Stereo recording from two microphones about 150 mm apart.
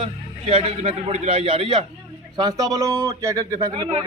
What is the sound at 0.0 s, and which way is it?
A man's voice, 35° right (ahead or behind).